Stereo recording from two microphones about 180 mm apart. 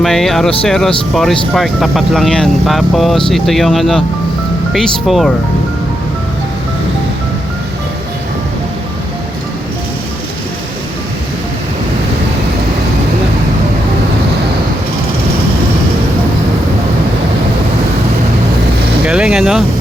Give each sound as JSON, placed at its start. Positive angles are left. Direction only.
{"t": 0.0, "sound": "speech", "side_deg": 0}
{"t": 19.0, "sound": "vehicle", "side_deg": -5}